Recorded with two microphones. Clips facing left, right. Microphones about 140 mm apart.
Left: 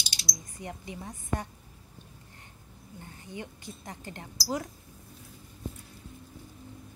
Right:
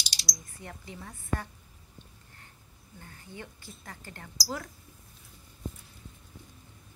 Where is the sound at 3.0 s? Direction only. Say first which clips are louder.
Left 4 dB; 20° left (ahead or behind).